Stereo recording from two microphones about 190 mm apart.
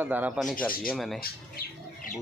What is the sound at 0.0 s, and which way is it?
Speech, 10° right (ahead or behind).